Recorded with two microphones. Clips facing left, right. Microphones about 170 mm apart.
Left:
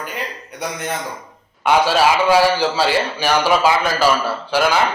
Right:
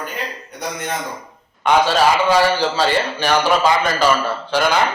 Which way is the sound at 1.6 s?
10° left (ahead or behind).